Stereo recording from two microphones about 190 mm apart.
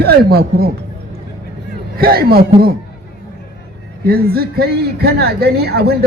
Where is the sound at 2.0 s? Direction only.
50° right (ahead or behind).